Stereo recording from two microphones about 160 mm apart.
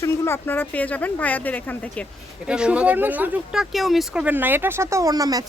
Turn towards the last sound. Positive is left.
turn(degrees=-25)  # may be behind; listen again after turning